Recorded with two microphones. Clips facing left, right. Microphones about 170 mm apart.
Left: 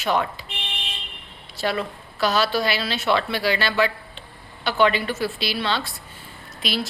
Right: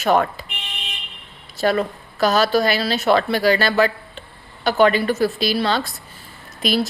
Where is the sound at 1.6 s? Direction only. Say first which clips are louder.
Right 6 dB; 45° right (ahead or behind).